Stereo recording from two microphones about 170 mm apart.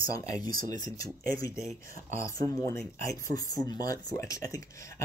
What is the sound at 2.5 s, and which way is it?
Speech, 20° left (ahead or behind).